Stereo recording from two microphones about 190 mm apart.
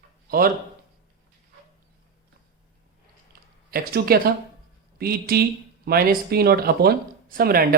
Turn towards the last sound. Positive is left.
turn(degrees=-50)  # may be behind; listen again after turning